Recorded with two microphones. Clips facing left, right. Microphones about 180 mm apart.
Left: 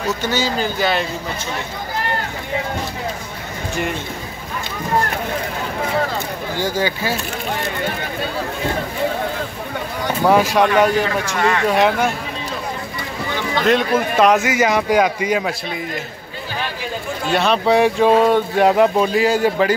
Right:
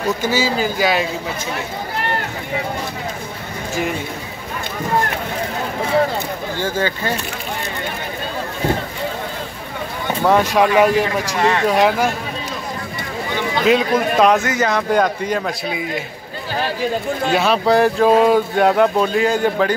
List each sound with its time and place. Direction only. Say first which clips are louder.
0.2 s speech: right 2 dB; 5° right (ahead or behind)
6.6 s speech: left 1 dB; 10° left (ahead or behind)
10.2 s speech: even; centre (ahead or behind)
11.3 s speech: right 1 dB; 25° right (ahead or behind)
11.6 s speech: even; centre (ahead or behind)
13.7 s speech: right 1 dB; centre (ahead or behind)
17.3 s speech: even; centre (ahead or behind)